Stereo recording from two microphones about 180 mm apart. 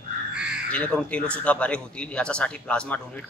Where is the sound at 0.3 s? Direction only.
5° right (ahead or behind).